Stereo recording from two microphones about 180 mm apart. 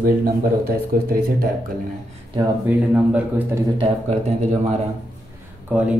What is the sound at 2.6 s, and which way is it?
Speech, 5° right (ahead or behind).